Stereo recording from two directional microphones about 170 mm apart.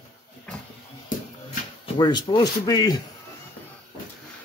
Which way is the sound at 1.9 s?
30° left (ahead or behind).